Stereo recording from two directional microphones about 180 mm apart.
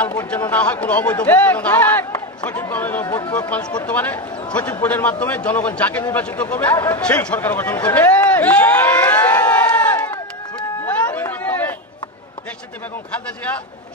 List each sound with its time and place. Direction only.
0.0 s speech: 10° left (ahead or behind)
3.1 s speech: 20° left (ahead or behind)
3.8 s a man's voice: 10° left (ahead or behind)
10.9 s chatter: 10° left (ahead or behind)